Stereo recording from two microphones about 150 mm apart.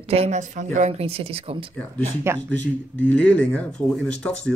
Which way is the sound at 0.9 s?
40° right (ahead or behind).